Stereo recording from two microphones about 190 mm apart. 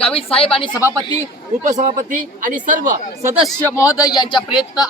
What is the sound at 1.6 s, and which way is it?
A man's voice, 40° right (ahead or behind).